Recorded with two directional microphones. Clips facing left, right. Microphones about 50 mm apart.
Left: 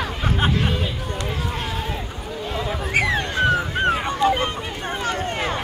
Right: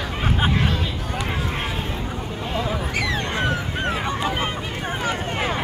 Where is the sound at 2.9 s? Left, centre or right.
Left.